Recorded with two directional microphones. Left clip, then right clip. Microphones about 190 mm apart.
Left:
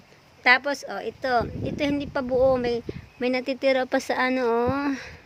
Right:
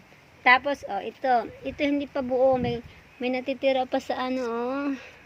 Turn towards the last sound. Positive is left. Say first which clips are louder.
# left 4 dB
turn(degrees=25)  # may be behind; listen again after turning